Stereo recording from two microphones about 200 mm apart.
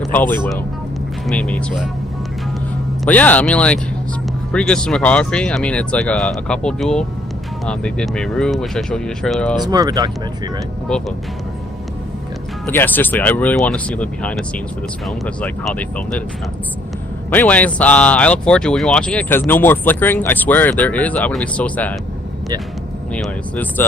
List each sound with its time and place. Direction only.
0.0 s speech: 10° left (ahead or behind)
1.4 s speech: 5° left (ahead or behind)
3.0 s speech: 10° left (ahead or behind)
9.6 s speech: 20° right (ahead or behind)
12.6 s speech: 10° left (ahead or behind)
17.3 s speech: 10° left (ahead or behind)
23.1 s speech: 5° left (ahead or behind)